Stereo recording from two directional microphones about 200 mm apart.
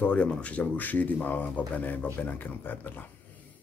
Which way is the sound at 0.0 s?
5° left (ahead or behind).